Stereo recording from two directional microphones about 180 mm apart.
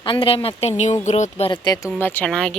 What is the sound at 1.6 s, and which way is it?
Speech, 20° left (ahead or behind).